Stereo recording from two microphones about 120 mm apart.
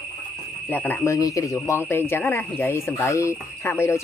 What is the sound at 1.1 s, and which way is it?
Speech, 25° left (ahead or behind).